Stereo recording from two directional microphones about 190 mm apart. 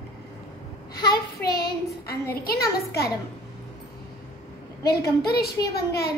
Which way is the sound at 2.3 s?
55° left (ahead or behind).